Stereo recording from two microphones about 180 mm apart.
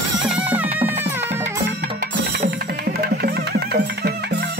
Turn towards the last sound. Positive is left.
turn(degrees=-65)  # may be behind; listen again after turning